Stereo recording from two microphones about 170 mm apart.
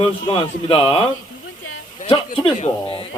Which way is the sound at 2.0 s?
30° left (ahead or behind).